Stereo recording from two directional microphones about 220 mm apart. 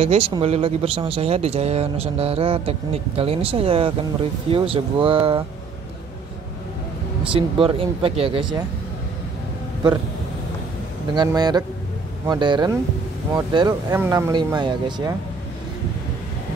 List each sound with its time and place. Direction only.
0.0 s speech: 25° right (ahead or behind)
7.3 s speech: 25° right (ahead or behind)
11.1 s a sound: 20° right (ahead or behind)
12.3 s speech: 20° right (ahead or behind)